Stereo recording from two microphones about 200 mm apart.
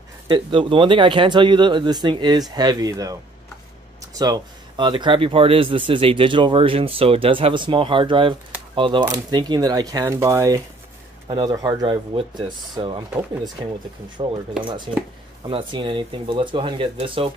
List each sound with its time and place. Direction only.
0.3 s speech: 25° right (ahead or behind)
14.2 s speech: 25° right (ahead or behind)